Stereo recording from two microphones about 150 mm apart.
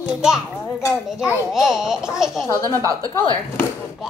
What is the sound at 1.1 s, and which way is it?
A child's voice, 10° right (ahead or behind).